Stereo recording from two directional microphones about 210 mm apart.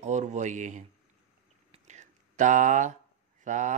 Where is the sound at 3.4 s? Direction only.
35° right (ahead or behind).